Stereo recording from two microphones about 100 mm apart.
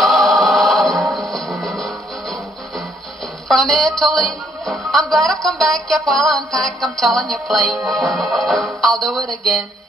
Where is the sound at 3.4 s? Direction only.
Centre (ahead or behind).